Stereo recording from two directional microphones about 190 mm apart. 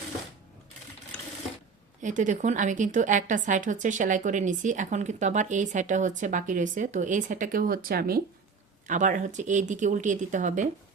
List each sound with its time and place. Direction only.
2.0 s a woman's voice: 40° right (ahead or behind)
8.9 s a woman's voice: 40° right (ahead or behind)